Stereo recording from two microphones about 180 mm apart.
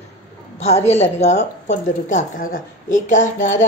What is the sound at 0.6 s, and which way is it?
A woman's voice, 35° left (ahead or behind).